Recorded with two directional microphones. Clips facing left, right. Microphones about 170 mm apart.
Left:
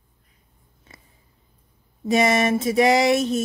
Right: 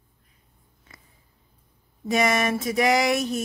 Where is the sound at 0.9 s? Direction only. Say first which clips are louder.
Left 2 dB; 25° left (ahead or behind).